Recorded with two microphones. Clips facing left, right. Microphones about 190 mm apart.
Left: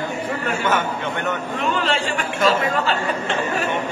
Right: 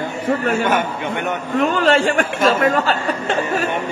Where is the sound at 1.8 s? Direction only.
45° right (ahead or behind).